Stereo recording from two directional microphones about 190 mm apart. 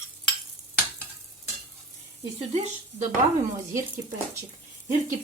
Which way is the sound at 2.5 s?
40° right (ahead or behind).